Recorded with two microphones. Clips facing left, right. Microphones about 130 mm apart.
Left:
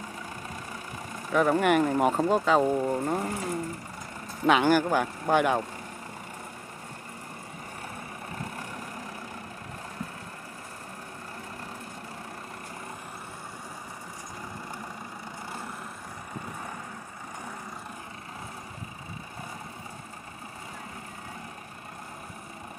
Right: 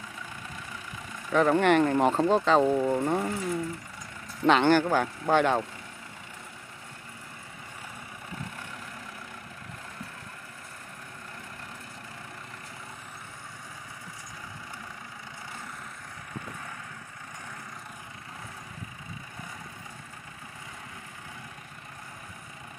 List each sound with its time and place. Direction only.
1.3 s speech: 10° left (ahead or behind)
3.3 s speech: 40° left (ahead or behind)
4.5 s speech: 10° left (ahead or behind)
8.4 s vehicle: 40° left (ahead or behind)